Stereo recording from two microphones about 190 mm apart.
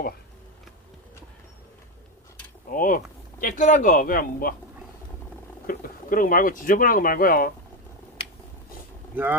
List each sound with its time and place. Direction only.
2.6 s a sound: 45° left (ahead or behind)
3.4 s speech: 40° left (ahead or behind)
5.6 s speech: 45° left (ahead or behind)